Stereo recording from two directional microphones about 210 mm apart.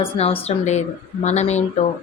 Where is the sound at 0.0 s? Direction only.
30° left (ahead or behind).